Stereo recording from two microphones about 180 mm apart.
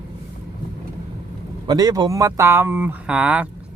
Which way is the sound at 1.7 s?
20° right (ahead or behind).